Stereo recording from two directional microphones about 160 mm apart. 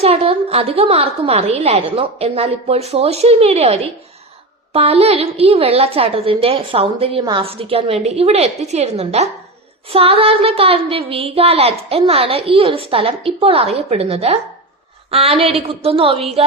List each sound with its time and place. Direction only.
0.0 s a woman's voice: 35° right (ahead or behind)